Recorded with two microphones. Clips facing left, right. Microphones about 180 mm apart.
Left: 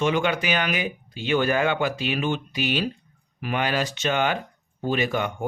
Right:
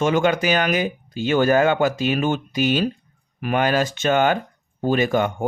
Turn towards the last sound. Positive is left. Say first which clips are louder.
# right 5 dB
turn(degrees=-50)  # may be behind; listen again after turning